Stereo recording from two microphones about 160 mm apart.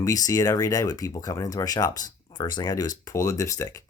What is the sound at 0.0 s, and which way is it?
Speech, 20° left (ahead or behind).